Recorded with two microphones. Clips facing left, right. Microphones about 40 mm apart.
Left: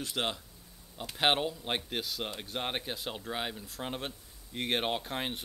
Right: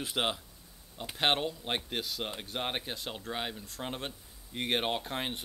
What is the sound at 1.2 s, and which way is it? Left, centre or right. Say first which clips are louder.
Speech: left 1 dB; centre.